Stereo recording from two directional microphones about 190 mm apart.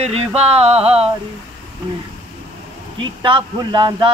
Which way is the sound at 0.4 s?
35° right (ahead or behind).